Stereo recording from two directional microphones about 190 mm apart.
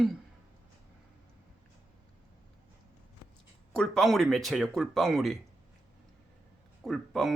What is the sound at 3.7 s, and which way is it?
Speech, 5° left (ahead or behind).